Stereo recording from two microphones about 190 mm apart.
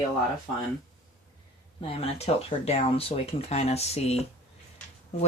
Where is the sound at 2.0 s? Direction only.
30° left (ahead or behind).